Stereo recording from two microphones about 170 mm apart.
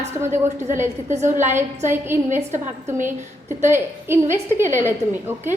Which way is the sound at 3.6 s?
15° right (ahead or behind).